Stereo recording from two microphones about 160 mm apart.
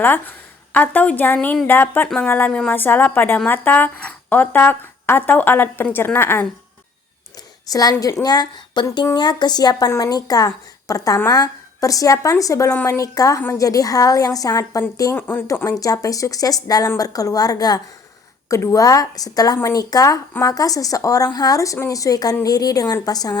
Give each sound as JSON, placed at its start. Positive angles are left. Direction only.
{"t": 0.0, "sound": "a woman's voice", "side_deg": 10}
{"t": 7.7, "sound": "a woman's voice", "side_deg": 20}